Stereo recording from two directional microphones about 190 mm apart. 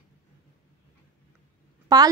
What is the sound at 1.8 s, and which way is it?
Speech, 20° right (ahead or behind).